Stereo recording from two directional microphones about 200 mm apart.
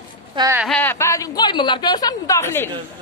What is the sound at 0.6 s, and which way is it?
A woman's voice, 5° left (ahead or behind).